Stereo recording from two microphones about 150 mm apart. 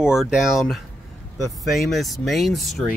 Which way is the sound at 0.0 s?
5° right (ahead or behind).